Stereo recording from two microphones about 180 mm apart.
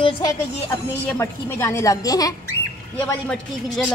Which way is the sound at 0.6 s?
15° left (ahead or behind).